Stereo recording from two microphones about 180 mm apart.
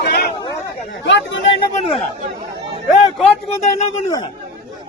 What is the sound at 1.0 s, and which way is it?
Speech, 90° left.